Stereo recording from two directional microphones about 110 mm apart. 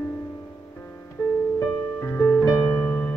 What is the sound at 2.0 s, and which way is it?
Music, 25° left (ahead or behind).